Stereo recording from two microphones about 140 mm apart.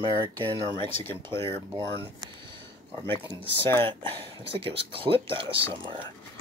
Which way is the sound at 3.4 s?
15° left (ahead or behind).